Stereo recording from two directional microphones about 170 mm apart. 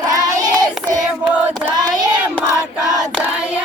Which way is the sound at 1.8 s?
25° right (ahead or behind).